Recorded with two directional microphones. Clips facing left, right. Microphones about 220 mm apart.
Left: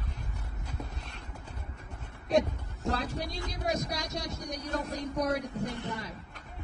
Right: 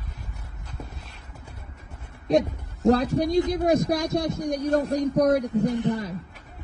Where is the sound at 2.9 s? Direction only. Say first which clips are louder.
Right 14 dB; 45° right (ahead or behind).